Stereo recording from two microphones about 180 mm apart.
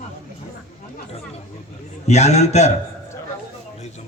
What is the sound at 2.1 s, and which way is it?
Speech, 40° left (ahead or behind).